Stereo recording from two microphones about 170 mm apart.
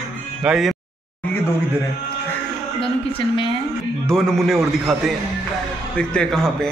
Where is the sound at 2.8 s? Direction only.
30° left (ahead or behind).